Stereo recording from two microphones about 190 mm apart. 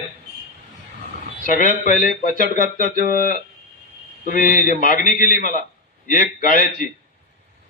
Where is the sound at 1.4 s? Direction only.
45° left (ahead or behind).